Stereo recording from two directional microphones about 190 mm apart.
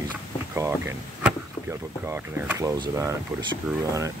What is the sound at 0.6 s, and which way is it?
Speech, 15° right (ahead or behind).